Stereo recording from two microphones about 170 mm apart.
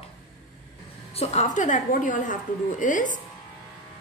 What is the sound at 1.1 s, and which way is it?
A woman's voice, 40° left (ahead or behind).